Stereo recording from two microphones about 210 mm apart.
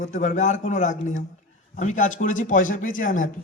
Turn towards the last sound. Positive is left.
turn(degrees=40)  # may be behind; listen again after turning